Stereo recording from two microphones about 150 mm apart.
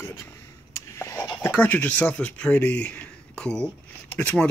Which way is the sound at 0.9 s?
20° left (ahead or behind).